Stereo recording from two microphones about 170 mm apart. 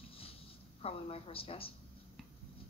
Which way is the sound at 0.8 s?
35° left (ahead or behind).